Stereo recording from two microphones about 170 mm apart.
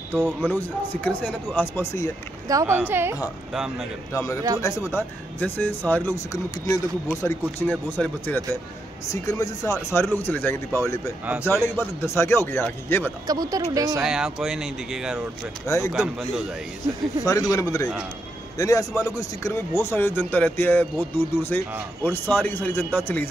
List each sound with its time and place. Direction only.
0.4 s speech: 10° left (ahead or behind)
2.4 s speech: 15° right (ahead or behind)
3.5 s speech: centre (ahead or behind)
4.1 s speech: 20° left (ahead or behind)
13.3 s speech: 20° right (ahead or behind)
14.0 s speech: 5° right (ahead or behind)
15.6 s speech: 20° left (ahead or behind)
15.9 s speech: centre (ahead or behind)
17.2 s speech: 20° left (ahead or behind)